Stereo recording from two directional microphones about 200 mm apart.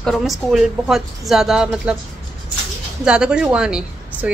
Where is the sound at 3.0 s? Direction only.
5° right (ahead or behind).